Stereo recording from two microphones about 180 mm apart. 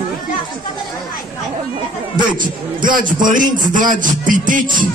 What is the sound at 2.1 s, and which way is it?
A man's voice, 50° right (ahead or behind).